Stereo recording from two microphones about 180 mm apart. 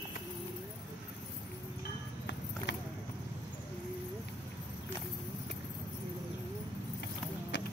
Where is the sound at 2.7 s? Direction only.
75° left (ahead or behind).